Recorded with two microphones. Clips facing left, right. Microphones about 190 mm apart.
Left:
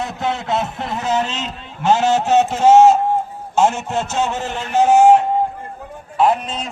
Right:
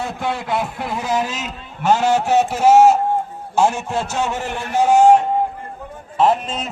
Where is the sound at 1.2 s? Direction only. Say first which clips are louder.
Left 1 dB; 10° right (ahead or behind).